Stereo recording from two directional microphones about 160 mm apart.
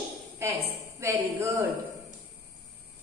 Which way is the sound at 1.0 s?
15° right (ahead or behind).